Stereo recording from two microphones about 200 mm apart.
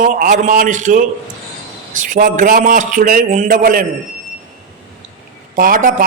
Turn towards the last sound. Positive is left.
turn(degrees=-40)  # may be behind; listen again after turning